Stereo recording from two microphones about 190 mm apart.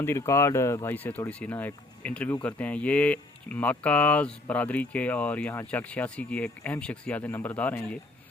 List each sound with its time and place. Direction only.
0.0 s speech: 15° left (ahead or behind)